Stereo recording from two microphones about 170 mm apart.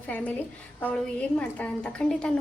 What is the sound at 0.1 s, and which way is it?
A woman's voice, 10° left (ahead or behind).